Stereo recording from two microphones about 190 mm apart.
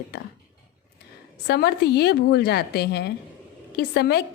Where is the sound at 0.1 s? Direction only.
55° left (ahead or behind).